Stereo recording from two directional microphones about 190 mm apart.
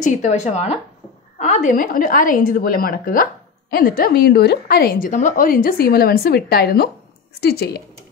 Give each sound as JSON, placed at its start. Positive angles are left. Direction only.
{"t": 0.0, "sound": "a woman's voice", "side_deg": 40}